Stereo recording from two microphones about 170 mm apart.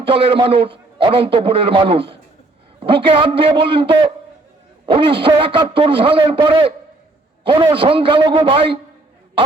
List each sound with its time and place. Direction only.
0.0 s a man's voice: 30° right (ahead or behind)